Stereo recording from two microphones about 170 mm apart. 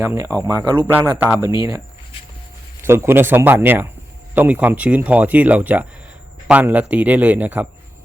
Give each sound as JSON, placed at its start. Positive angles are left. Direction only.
{"t": 0.0, "sound": "speech", "side_deg": -15}
{"t": 2.8, "sound": "speech", "side_deg": -15}